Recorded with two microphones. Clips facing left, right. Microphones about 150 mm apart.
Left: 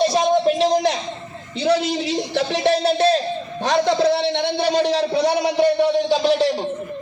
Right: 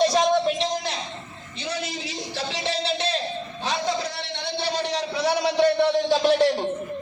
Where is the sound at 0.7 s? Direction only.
90° left.